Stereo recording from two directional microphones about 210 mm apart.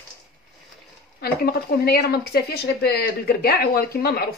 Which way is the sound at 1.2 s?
45° left (ahead or behind).